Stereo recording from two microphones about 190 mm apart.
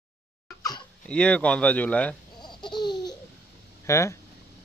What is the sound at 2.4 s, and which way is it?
Laughter, 20° left (ahead or behind).